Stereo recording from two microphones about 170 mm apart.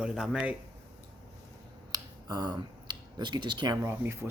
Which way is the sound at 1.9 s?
25° right (ahead or behind).